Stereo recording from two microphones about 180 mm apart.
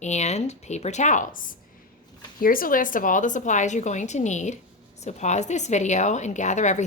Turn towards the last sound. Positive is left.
turn(degrees=40)  # may be behind; listen again after turning